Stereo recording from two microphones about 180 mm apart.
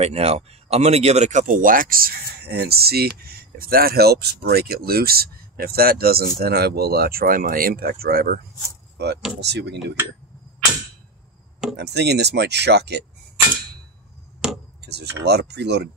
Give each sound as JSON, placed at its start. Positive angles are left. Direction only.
{"t": 0.0, "sound": "speech", "side_deg": -35}
{"t": 11.7, "sound": "speech", "side_deg": -65}
{"t": 14.8, "sound": "speech", "side_deg": -65}